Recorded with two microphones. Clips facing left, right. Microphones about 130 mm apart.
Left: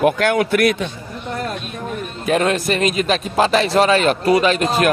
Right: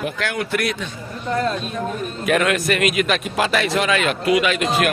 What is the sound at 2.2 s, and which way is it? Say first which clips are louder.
Speech: left 2 dB; 30° left (ahead or behind).